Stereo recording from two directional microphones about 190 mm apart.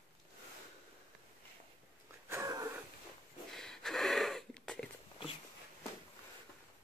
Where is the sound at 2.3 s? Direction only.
15° right (ahead or behind).